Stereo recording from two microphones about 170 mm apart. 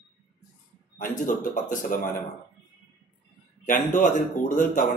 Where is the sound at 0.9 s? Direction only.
50° left (ahead or behind).